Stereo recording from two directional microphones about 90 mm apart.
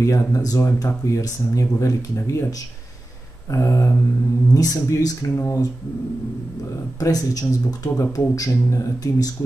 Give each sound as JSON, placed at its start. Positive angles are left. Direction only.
{"t": 0.0, "sound": "speech", "side_deg": 40}
{"t": 3.4, "sound": "speech", "side_deg": 35}
{"t": 7.0, "sound": "speech", "side_deg": 40}